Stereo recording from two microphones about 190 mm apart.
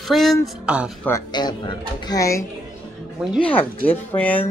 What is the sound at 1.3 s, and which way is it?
Speech, 20° left (ahead or behind).